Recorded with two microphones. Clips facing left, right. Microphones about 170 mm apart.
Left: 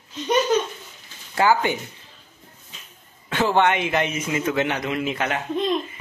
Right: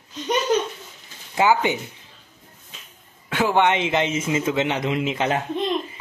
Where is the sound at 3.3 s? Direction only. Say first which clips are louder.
Even; 10° right (ahead or behind).